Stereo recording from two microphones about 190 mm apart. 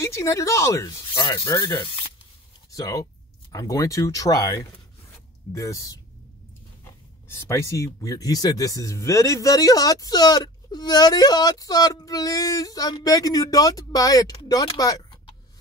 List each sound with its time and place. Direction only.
0.0 s speech: 15° left (ahead or behind)
5.5 s speech: 15° left (ahead or behind)